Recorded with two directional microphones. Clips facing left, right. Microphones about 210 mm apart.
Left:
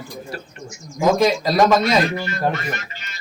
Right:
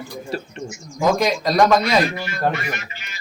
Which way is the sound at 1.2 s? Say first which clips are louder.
Left 1 dB; 5° left (ahead or behind).